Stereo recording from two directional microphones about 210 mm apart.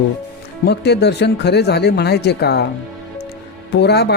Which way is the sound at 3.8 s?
50° left (ahead or behind).